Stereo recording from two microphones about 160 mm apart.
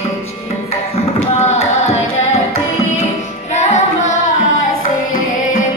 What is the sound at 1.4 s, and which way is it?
Carnatic music, 45° left (ahead or behind).